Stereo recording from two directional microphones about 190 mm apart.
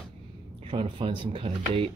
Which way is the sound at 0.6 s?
30° right (ahead or behind).